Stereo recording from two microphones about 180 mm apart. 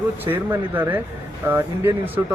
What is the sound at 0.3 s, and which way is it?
Speech, 10° right (ahead or behind).